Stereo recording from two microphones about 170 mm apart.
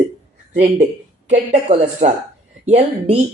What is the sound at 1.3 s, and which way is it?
Speech, 35° right (ahead or behind).